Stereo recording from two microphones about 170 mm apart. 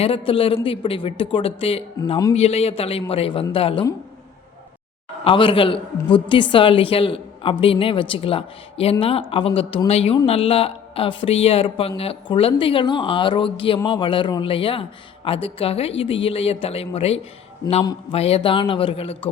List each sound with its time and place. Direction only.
0.0 s a woman's voice: 30° left (ahead or behind)
5.2 s a woman's voice: 30° left (ahead or behind)